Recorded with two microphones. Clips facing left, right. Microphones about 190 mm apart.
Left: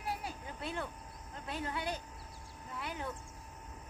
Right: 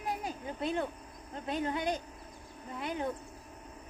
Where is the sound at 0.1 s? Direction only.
20° right (ahead or behind).